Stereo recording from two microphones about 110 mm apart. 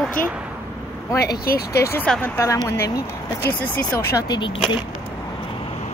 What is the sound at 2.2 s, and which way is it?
Speech, 25° left (ahead or behind).